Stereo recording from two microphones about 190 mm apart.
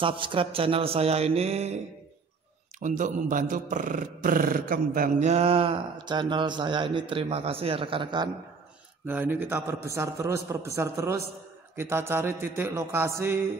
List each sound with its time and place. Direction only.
0.0 s a man's voice: 25° right (ahead or behind)
2.8 s speech: 40° right (ahead or behind)
5.3 s speech: 30° right (ahead or behind)
9.0 s a sound: 10° right (ahead or behind)